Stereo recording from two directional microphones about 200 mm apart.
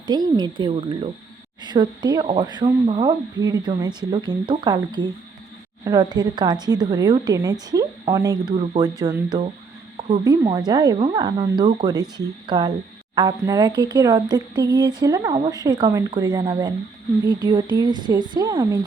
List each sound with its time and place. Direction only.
0.1 s speech: 20° right (ahead or behind)